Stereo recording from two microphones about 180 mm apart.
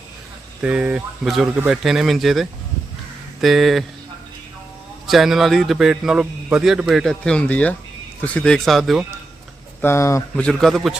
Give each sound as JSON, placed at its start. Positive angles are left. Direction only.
{"t": 0.6, "sound": "a man's voice", "side_deg": -5}
{"t": 5.0, "sound": "a man's voice", "side_deg": 0}
{"t": 9.8, "sound": "speech", "side_deg": 15}
{"t": 10.4, "sound": "a man's voice", "side_deg": 0}